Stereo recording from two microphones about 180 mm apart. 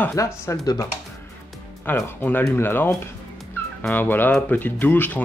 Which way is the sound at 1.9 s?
10° left (ahead or behind).